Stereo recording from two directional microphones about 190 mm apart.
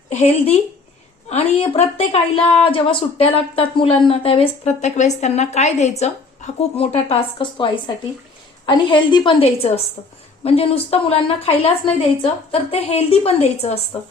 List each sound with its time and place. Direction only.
0.1 s speech: 35° left (ahead or behind)